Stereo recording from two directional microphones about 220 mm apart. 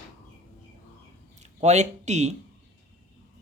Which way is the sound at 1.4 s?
30° right (ahead or behind).